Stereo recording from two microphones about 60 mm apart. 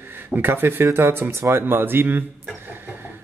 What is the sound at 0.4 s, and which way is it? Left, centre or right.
Speech, right.